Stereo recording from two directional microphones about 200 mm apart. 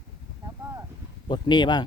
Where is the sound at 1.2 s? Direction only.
20° left (ahead or behind).